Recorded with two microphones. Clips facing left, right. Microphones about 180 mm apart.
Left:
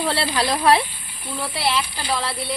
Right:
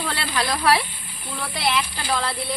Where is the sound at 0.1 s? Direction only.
30° left (ahead or behind).